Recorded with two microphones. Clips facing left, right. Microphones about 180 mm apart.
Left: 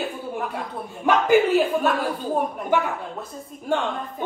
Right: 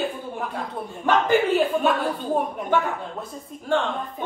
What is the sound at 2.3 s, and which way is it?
A woman's voice, centre (ahead or behind).